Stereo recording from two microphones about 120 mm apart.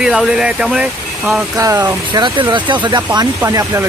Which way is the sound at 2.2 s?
40° right (ahead or behind).